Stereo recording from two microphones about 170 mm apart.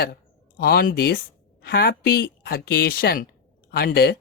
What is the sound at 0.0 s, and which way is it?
A woman's voice, 65° left (ahead or behind).